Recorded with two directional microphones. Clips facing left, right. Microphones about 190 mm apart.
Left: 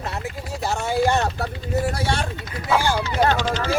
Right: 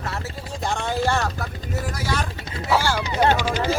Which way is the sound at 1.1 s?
25° left (ahead or behind).